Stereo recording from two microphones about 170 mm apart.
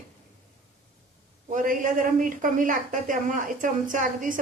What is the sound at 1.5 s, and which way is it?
A woman's voice, 50° right (ahead or behind).